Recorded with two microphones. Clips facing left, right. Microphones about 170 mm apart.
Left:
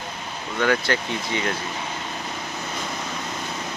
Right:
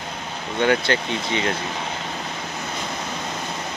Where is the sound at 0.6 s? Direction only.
25° right (ahead or behind).